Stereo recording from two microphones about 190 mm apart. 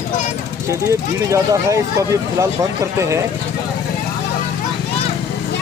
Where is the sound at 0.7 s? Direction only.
15° right (ahead or behind).